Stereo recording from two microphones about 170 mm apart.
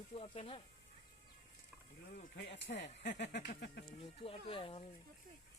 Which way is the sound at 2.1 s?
80° left.